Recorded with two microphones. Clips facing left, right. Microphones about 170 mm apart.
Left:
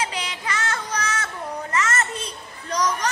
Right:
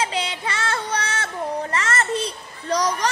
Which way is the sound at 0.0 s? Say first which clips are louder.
Right 4 dB; 30° right (ahead or behind).